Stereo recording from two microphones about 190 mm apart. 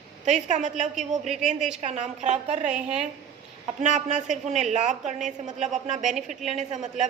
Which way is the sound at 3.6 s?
40° right (ahead or behind).